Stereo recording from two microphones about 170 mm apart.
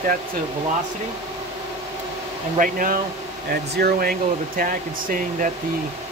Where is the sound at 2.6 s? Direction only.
55° right (ahead or behind).